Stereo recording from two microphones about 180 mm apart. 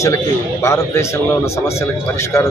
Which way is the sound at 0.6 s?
15° left (ahead or behind).